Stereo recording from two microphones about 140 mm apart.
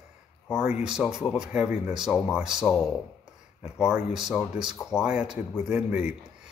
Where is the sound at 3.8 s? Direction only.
5° right (ahead or behind).